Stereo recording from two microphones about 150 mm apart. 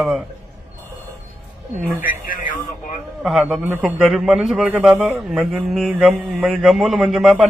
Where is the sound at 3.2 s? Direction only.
5° right (ahead or behind).